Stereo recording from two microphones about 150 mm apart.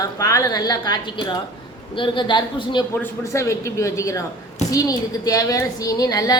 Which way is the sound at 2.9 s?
15° left (ahead or behind).